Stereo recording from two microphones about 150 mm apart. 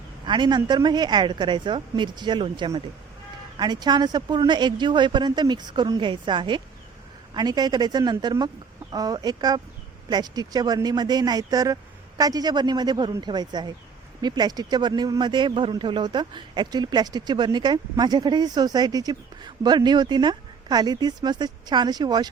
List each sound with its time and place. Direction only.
0.3 s a woman's voice: 30° right (ahead or behind)